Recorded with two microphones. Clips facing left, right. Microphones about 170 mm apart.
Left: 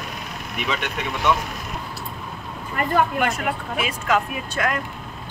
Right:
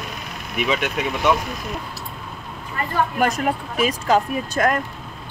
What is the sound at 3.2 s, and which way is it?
Speech, 40° right (ahead or behind).